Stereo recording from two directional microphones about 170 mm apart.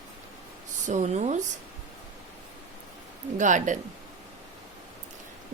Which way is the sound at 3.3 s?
50° right (ahead or behind).